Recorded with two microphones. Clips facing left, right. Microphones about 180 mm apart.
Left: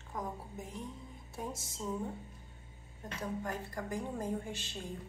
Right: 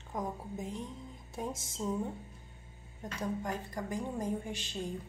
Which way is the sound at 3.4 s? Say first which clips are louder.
Right 2 dB; 20° right (ahead or behind).